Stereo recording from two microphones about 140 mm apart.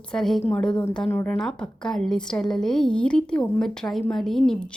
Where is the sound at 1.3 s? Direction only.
5° left (ahead or behind).